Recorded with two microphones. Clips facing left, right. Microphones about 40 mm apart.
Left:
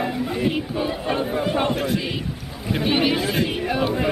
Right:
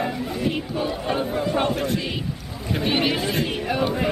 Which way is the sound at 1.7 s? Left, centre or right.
Centre.